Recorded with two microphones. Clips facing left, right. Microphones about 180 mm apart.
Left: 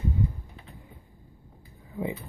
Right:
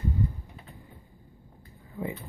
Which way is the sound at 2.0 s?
20° left (ahead or behind).